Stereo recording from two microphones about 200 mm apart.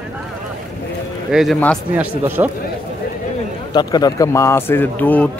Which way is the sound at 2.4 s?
20° right (ahead or behind).